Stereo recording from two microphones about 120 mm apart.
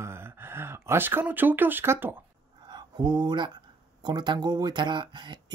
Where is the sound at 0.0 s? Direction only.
20° right (ahead or behind).